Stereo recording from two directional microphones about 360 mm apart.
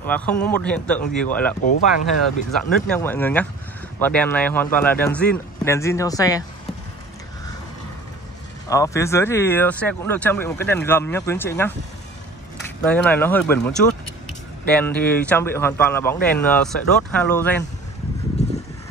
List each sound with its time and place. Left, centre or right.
0.0 s speech: centre
1.7 s speech: left
2.9 s speech: centre
8.6 s speech: centre
12.8 s speech: centre
14.7 s speech: centre